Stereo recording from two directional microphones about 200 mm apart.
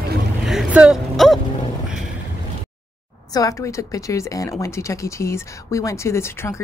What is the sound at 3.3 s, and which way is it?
Speech, 15° left (ahead or behind).